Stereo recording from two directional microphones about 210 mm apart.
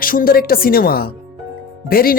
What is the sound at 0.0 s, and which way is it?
A woman's voice, 40° left (ahead or behind).